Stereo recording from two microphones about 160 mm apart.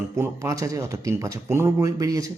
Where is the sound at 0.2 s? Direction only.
20° right (ahead or behind).